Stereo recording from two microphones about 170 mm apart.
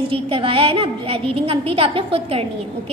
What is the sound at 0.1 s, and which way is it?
A woman's voice, 30° right (ahead or behind).